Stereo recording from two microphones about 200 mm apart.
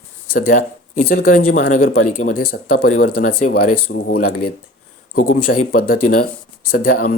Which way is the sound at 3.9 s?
55° left (ahead or behind).